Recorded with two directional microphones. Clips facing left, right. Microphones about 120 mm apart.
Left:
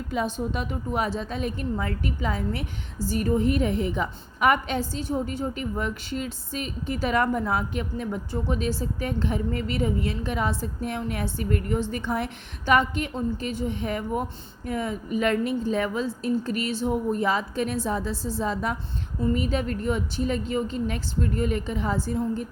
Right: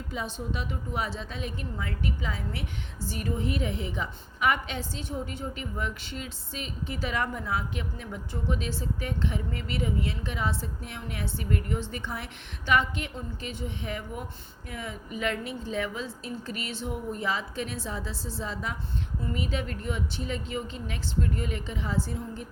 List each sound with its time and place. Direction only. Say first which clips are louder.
0.1 s a woman's voice: left 8 dB; 60° left (ahead or behind)
0.3 s a woman's voice: left 5 dB; 45° left (ahead or behind)